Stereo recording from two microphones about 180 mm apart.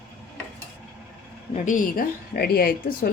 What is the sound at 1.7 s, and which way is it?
Speech, 50° left (ahead or behind).